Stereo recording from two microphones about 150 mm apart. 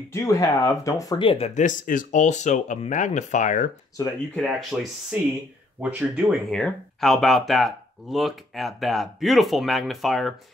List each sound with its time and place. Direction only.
0.1 s speech: 20° left (ahead or behind)
1.2 s speech: 35° left (ahead or behind)
1.5 s speech: 60° left (ahead or behind)
4.4 s speech: centre (ahead or behind)
6.5 s speech: centre (ahead or behind)